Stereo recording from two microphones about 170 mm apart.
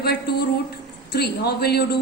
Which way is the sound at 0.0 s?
70° left (ahead or behind).